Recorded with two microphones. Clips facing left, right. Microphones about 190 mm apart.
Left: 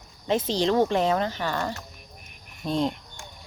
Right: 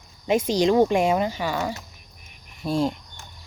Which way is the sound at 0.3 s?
10° right (ahead or behind).